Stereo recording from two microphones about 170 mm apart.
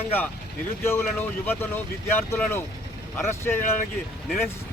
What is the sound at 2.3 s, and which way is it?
Speech, 15° left (ahead or behind).